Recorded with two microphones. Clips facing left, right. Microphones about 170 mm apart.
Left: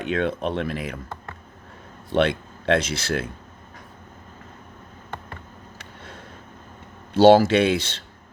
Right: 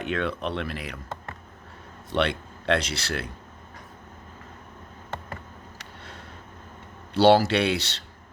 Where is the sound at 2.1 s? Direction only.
45° left (ahead or behind).